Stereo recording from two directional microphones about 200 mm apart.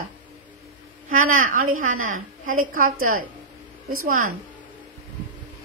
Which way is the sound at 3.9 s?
90° right.